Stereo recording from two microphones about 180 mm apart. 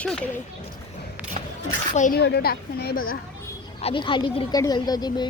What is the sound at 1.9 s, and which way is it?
Speech, 45° left (ahead or behind).